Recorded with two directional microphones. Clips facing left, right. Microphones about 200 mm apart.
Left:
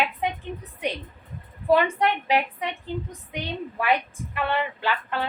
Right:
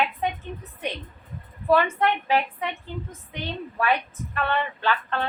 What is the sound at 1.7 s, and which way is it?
A woman's voice, 15° left (ahead or behind).